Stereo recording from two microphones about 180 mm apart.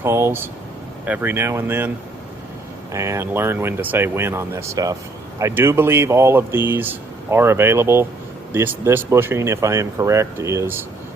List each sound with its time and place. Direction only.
0.0 s speech: 15° right (ahead or behind)
2.9 s speech: 15° right (ahead or behind)